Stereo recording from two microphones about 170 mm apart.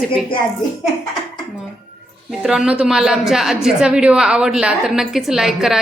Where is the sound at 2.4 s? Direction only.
5° right (ahead or behind).